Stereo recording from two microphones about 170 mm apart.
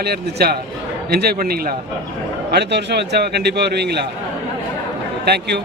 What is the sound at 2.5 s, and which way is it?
A man's voice, 85° right.